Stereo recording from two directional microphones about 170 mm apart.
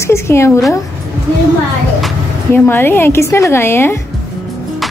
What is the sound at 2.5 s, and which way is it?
A woman's voice, 15° left (ahead or behind).